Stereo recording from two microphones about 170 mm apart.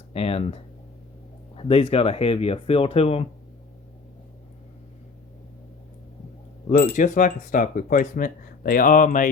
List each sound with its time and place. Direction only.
0.1 s speech: 35° left (ahead or behind)
6.7 s speech: 50° left (ahead or behind)